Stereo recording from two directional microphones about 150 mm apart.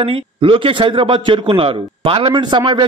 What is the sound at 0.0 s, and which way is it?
A man's voice, 35° right (ahead or behind).